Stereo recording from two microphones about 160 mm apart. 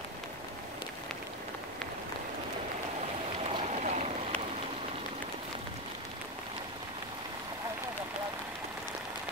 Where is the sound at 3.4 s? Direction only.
40° right (ahead or behind).